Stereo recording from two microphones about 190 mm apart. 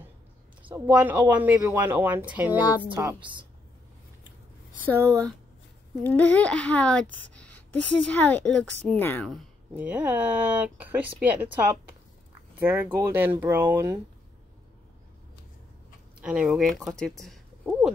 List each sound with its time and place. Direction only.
0.7 s speech: 10° right (ahead or behind)
2.6 s speech: 20° left (ahead or behind)
2.9 s speech: 20° right (ahead or behind)
4.9 s speech: 15° right (ahead or behind)
6.0 s a child's voice: 5° left (ahead or behind)
9.3 s speech: 5° right (ahead or behind)
12.5 s speech: 10° right (ahead or behind)
16.2 s speech: 5° right (ahead or behind)